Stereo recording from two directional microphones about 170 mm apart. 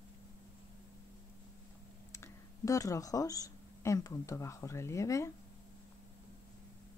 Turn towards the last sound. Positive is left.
turn(degrees=20)  # may be behind; listen again after turning